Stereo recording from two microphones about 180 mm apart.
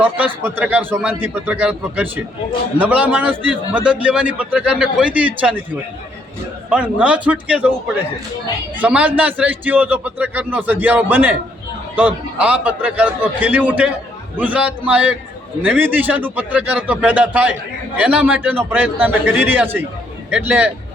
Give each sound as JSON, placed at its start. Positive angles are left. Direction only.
{"t": 0.0, "sound": "a man's voice", "side_deg": -10}
{"t": 6.7, "sound": "a man's voice", "side_deg": -5}